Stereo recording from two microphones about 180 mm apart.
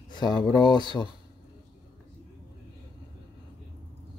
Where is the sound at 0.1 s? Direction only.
25° left (ahead or behind).